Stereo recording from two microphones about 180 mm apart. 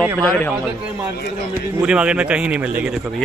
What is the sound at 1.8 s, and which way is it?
A man's voice, 5° right (ahead or behind).